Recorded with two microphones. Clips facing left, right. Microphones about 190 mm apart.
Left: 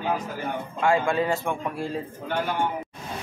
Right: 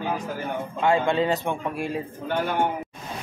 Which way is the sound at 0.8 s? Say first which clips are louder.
Right 1 dB; 20° right (ahead or behind).